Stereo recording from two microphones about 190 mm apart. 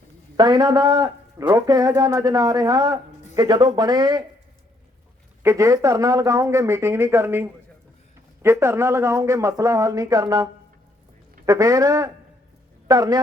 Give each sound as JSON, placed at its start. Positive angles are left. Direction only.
{"t": 0.3, "sound": "a man's voice", "side_deg": -20}
{"t": 5.4, "sound": "a man's voice", "side_deg": -15}